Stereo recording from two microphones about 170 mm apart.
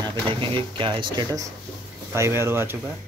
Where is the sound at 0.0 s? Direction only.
30° right (ahead or behind); by 2.8 s 15° right (ahead or behind).